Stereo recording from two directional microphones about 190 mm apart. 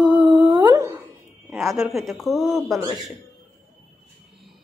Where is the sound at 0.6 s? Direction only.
15° right (ahead or behind).